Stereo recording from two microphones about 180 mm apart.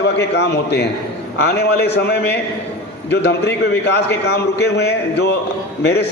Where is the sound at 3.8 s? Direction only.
65° left (ahead or behind).